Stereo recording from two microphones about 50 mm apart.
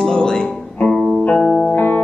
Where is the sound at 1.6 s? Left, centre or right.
Left.